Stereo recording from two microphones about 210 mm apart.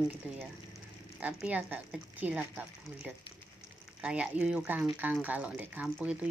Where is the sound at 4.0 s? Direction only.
5° right (ahead or behind).